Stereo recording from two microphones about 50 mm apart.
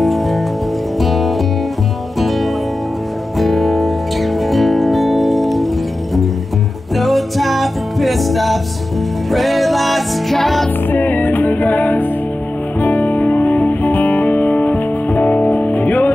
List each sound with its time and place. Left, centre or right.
0.0 s music: centre
7.0 s music: centre
10.9 s music: left